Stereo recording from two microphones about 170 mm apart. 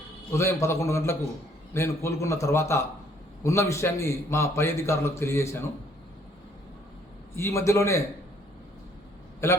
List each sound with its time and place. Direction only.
0.3 s a man's voice: 15° left (ahead or behind)
7.3 s a man's voice: 15° left (ahead or behind)
9.4 s a man's voice: 15° left (ahead or behind)